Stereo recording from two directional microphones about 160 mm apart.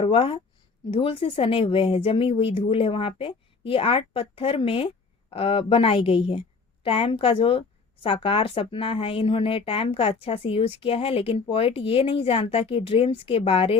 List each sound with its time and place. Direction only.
0.0 s speech: 35° left (ahead or behind)